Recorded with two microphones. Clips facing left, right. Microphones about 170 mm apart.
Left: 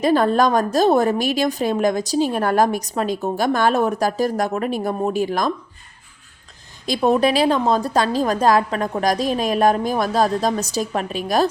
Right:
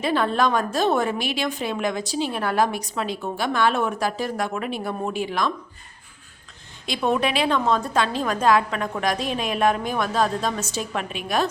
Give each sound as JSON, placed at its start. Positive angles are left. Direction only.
{"t": 0.0, "sound": "a woman's voice", "side_deg": 40}
{"t": 6.8, "sound": "a woman's voice", "side_deg": 35}